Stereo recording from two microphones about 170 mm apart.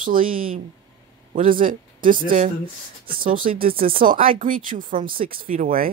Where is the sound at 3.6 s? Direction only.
55° right (ahead or behind).